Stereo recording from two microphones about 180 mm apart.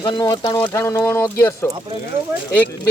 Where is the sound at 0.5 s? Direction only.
15° left (ahead or behind).